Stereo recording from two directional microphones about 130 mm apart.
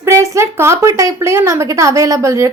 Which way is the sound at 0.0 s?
20° right (ahead or behind).